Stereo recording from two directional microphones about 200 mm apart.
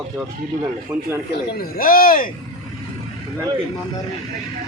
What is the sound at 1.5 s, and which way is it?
Speech, 45° left (ahead or behind).